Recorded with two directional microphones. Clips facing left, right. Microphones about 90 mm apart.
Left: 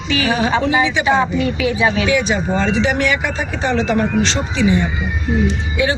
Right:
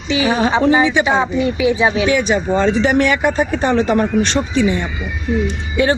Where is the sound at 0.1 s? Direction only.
20° right (ahead or behind).